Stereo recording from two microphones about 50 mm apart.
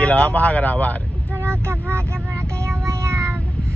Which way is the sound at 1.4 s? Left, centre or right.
Right.